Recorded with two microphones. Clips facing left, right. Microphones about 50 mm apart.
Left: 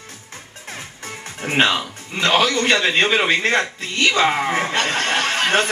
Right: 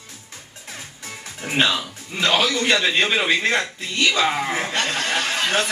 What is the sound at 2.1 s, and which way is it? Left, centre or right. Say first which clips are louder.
Speech: left 2 dB; centre.